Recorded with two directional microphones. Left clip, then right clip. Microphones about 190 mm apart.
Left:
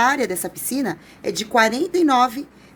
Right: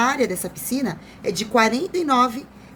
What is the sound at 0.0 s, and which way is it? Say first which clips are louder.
A woman's voice: left 2 dB; 45° left (ahead or behind).